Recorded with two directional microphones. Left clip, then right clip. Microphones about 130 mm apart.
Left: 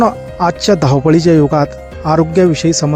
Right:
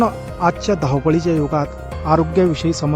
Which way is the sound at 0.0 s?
45° left (ahead or behind).